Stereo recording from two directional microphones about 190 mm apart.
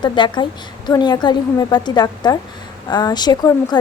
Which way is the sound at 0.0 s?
25° left (ahead or behind).